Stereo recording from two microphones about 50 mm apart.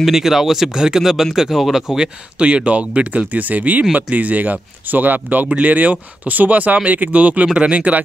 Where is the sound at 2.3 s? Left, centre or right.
Right.